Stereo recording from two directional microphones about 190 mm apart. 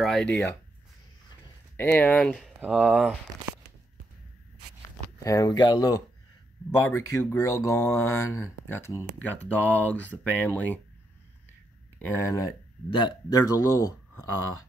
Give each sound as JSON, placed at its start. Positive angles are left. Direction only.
{"t": 0.0, "sound": "speech", "side_deg": 5}
{"t": 1.8, "sound": "speech", "side_deg": 10}
{"t": 5.2, "sound": "speech", "side_deg": 20}
{"t": 6.9, "sound": "speech", "side_deg": 15}
{"t": 12.0, "sound": "speech", "side_deg": 15}